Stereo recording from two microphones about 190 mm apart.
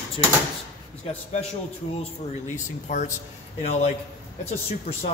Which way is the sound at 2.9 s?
40° left (ahead or behind).